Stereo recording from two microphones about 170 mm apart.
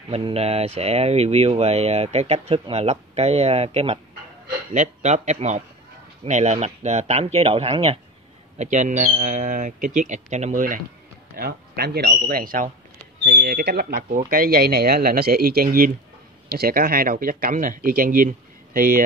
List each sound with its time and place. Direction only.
0.1 s speech: 35° right (ahead or behind); by 10.8 s 50° right (ahead or behind)
11.3 s speech: 65° right (ahead or behind)
13.2 s speech: 70° right (ahead or behind); by 19.0 s 55° right (ahead or behind)